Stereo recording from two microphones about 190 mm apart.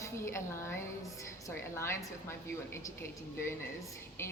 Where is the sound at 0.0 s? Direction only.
15° left (ahead or behind).